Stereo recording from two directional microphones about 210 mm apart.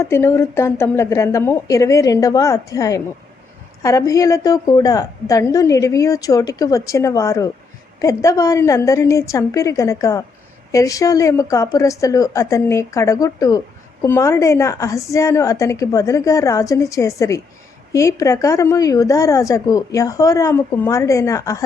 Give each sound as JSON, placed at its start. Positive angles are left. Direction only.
{"t": 0.0, "sound": "a woman's voice", "side_deg": 10}